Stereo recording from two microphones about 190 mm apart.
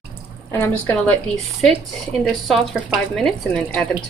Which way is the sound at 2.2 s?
Centre (ahead or behind).